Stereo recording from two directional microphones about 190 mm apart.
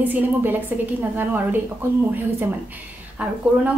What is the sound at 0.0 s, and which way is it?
A woman's voice, 10° right (ahead or behind).